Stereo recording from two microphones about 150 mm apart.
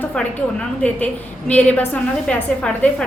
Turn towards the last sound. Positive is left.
turn(degrees=10)  # may be behind; listen again after turning